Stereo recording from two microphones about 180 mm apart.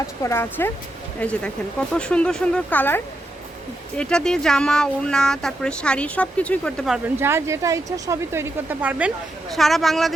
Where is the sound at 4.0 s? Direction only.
5° left (ahead or behind).